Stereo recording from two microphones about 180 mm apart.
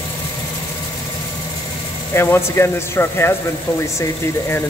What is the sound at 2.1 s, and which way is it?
Speech, 15° left (ahead or behind).